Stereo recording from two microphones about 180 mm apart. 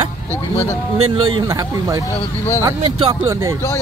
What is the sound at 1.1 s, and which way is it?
Speech, 25° right (ahead or behind).